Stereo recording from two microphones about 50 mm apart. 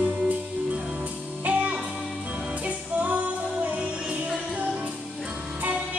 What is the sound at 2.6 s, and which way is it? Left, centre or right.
Music, right.